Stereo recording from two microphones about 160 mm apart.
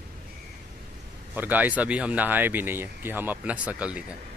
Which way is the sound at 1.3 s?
10° right (ahead or behind).